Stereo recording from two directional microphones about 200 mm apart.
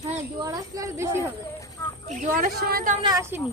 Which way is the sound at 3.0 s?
15° right (ahead or behind).